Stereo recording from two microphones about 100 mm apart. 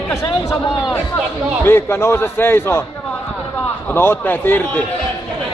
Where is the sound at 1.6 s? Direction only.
25° left (ahead or behind).